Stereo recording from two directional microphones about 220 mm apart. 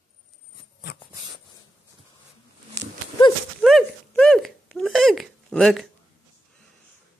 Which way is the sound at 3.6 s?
5° left (ahead or behind).